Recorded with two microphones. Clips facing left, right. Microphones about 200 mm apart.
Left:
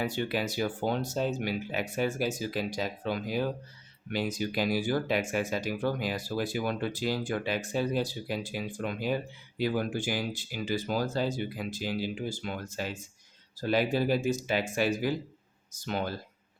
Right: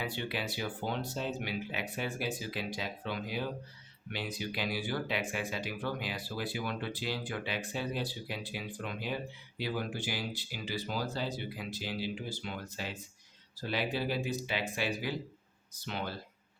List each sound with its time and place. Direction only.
0.0 s speech: 45° left (ahead or behind)